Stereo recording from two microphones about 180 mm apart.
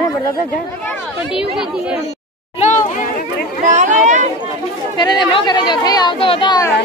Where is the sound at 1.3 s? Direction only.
5° right (ahead or behind).